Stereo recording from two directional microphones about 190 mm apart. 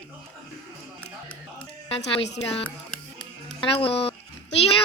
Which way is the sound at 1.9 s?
35° left (ahead or behind).